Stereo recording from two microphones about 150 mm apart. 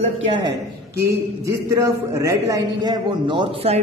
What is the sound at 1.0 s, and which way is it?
A man's voice, 20° right (ahead or behind).